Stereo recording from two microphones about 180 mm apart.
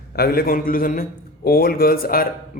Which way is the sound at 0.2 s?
55° left (ahead or behind).